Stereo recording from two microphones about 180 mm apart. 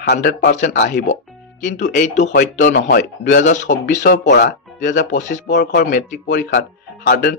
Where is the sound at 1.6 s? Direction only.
45° left (ahead or behind).